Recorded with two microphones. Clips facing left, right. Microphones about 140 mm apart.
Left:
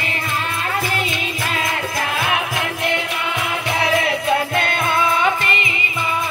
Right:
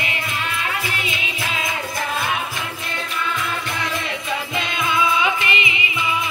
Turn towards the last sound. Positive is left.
turn(degrees=45)  # may be behind; listen again after turning